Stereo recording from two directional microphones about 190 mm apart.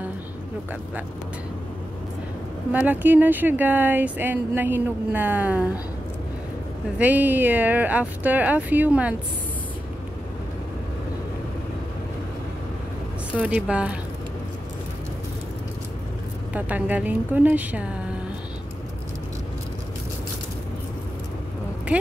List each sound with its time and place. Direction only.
2.7 s speech: 10° right (ahead or behind)
7.0 s speech: 10° right (ahead or behind)
13.3 s speech: 5° right (ahead or behind)
16.5 s speech: 10° right (ahead or behind)